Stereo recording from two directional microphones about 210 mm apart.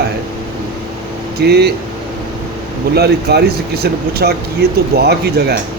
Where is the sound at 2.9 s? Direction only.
50° right (ahead or behind).